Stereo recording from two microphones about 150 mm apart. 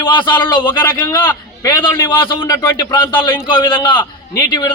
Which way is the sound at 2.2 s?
35° left (ahead or behind).